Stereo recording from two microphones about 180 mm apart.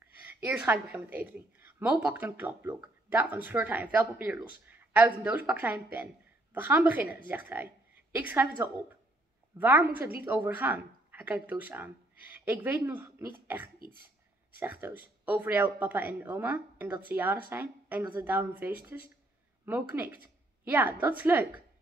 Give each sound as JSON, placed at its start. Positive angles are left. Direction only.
{"t": 0.0, "sound": "a woman's voice", "side_deg": -10}
{"t": 13.7, "sound": "speech", "side_deg": -55}
{"t": 14.6, "sound": "a woman's voice", "side_deg": -10}